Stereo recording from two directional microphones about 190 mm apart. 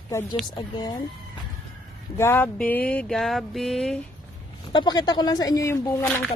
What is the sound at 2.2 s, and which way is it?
A woman's voice, 10° left (ahead or behind).